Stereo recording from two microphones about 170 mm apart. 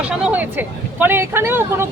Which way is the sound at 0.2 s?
10° right (ahead or behind).